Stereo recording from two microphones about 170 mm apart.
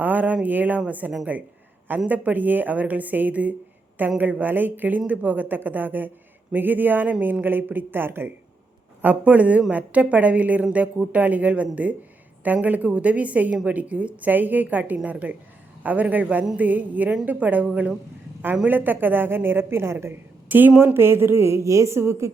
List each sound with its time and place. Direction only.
0.0 s a woman's voice: 10° right (ahead or behind)